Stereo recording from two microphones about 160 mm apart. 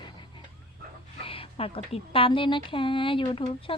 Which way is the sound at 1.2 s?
35° left (ahead or behind).